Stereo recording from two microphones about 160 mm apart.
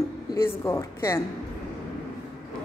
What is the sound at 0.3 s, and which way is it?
Speech, 15° left (ahead or behind).